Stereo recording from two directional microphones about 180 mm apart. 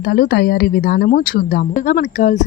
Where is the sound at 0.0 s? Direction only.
55° left (ahead or behind).